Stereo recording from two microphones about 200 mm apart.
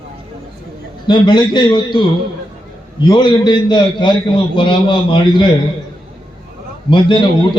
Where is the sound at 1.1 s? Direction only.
20° left (ahead or behind).